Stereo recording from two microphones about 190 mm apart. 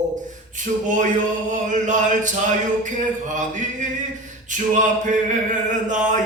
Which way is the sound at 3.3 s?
40° right (ahead or behind).